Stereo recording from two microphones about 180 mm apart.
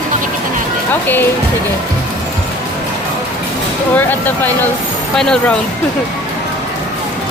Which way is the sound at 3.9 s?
10° left (ahead or behind).